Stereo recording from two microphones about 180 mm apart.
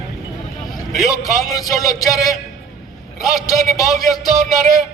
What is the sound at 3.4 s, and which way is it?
Speech, 20° left (ahead or behind).